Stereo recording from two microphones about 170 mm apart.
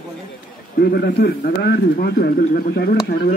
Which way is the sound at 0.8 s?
65° left (ahead or behind).